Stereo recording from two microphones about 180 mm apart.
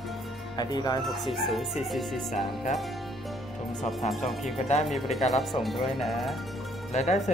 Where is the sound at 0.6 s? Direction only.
20° left (ahead or behind).